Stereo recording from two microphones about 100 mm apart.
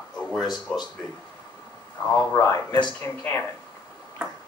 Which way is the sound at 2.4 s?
30° left (ahead or behind).